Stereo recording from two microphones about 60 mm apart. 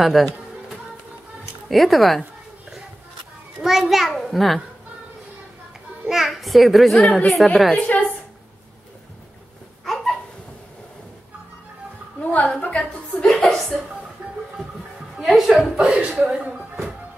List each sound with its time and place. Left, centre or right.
0.0 s music: centre
1.7 s a child's voice: centre
3.5 s a child's voice: centre
6.0 s a child's voice: centre
7.0 s a woman's voice: left
7.2 s a child's voice: centre
7.8 s a woman's voice: left
12.3 s a woman's voice: left; by 13.7 s centre
14.2 s a sound: centre
15.1 s a woman's voice: centre
15.5 s speech: right